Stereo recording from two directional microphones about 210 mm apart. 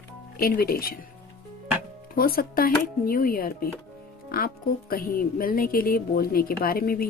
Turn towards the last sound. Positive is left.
turn(degrees=45)  # may be behind; listen again after turning